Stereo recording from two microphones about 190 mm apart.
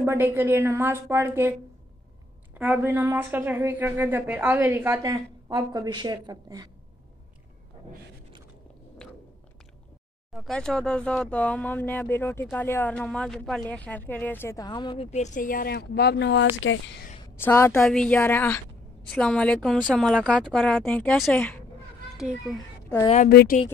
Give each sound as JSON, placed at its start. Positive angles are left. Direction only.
{"t": 0.0, "sound": "a woman's voice", "side_deg": -10}
{"t": 2.5, "sound": "a woman's voice", "side_deg": -10}
{"t": 10.3, "sound": "speech", "side_deg": 0}
{"t": 17.4, "sound": "a child's voice", "side_deg": 10}
{"t": 23.0, "sound": "a woman's voice", "side_deg": 40}
{"t": 23.3, "sound": "a woman's voice", "side_deg": 50}